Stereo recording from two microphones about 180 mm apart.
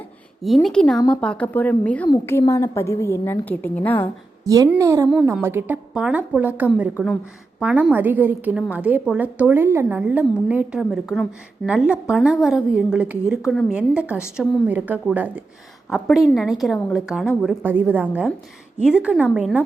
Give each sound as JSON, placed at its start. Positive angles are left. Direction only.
{"t": 0.4, "sound": "a woman's voice", "side_deg": 0}
{"t": 4.4, "sound": "a woman's voice", "side_deg": -20}